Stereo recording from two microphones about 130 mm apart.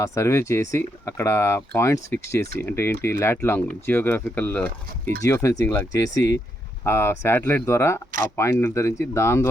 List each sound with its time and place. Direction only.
0.0 s speech: 25° left (ahead or behind)